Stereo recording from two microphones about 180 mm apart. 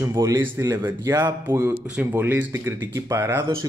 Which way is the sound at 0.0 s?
20° right (ahead or behind).